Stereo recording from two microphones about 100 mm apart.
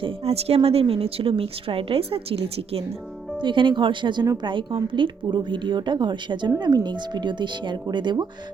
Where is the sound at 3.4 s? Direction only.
55° right (ahead or behind).